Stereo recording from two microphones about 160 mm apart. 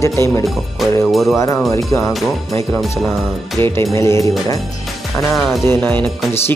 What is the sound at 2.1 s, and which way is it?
Speech, centre (ahead or behind).